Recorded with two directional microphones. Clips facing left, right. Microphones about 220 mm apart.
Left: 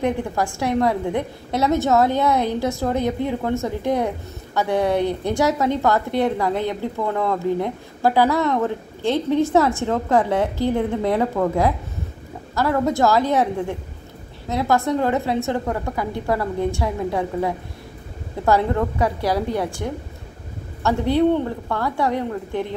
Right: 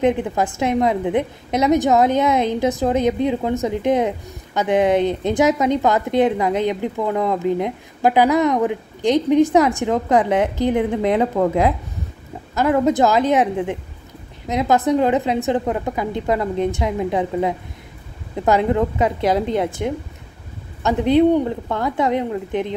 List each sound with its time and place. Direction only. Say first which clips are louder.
0.0 s a woman's voice: right 4 dB; 20° right (ahead or behind)